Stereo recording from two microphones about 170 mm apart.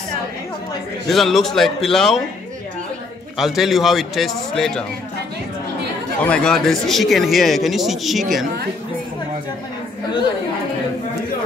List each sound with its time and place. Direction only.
1.0 s speech: centre (ahead or behind)
3.3 s speech: centre (ahead or behind)
6.2 s speech: 5° left (ahead or behind)